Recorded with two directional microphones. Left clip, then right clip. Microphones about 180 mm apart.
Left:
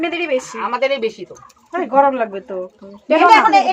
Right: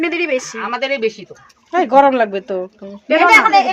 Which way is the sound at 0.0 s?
75° right (ahead or behind).